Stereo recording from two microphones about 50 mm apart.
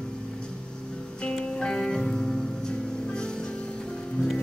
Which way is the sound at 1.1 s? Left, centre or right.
Centre.